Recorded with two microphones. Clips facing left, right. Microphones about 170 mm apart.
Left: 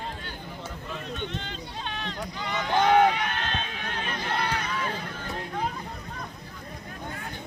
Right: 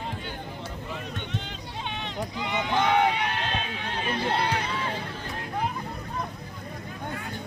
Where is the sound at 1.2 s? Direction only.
10° right (ahead or behind).